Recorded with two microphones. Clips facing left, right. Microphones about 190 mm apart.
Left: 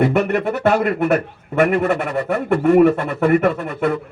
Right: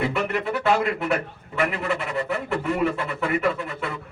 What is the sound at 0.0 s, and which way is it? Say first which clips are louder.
A man's voice: left 8 dB; 55° left (ahead or behind).